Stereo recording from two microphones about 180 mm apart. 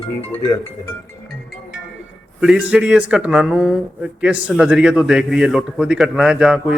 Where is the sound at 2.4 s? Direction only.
5° right (ahead or behind).